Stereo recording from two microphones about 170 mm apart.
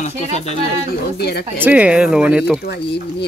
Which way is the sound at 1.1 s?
70° left (ahead or behind).